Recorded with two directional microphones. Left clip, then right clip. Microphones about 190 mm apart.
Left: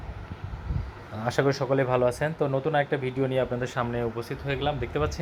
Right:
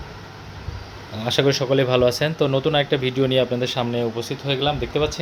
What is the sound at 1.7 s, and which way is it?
Speech, 25° right (ahead or behind).